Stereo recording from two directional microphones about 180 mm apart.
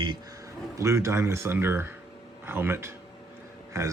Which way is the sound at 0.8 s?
15° right (ahead or behind).